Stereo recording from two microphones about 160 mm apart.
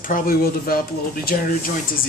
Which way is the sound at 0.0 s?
65° left (ahead or behind).